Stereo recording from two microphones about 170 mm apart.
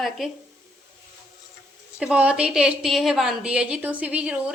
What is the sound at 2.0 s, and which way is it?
A woman's voice, 5° right (ahead or behind).